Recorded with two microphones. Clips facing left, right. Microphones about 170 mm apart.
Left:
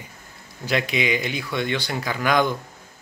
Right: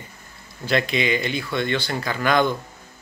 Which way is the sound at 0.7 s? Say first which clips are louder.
Right 1 dB; 10° left (ahead or behind).